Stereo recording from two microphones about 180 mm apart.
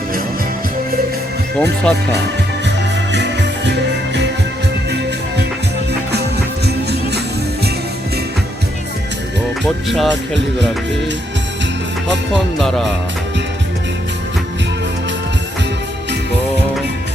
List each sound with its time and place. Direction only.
1.5 s speech: 5° left (ahead or behind)
2.6 s music: 75° right (ahead or behind)
9.6 s speech: centre (ahead or behind)
12.3 s speech: centre (ahead or behind)